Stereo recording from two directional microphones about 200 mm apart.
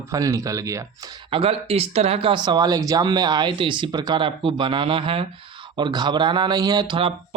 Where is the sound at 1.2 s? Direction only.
30° right (ahead or behind).